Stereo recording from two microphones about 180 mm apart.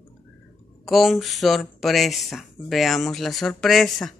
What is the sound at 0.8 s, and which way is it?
Speech, centre (ahead or behind).